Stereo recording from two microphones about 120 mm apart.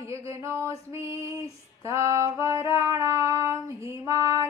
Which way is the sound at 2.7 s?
25° right (ahead or behind).